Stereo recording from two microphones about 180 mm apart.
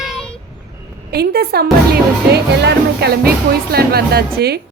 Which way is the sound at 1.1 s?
60° right (ahead or behind).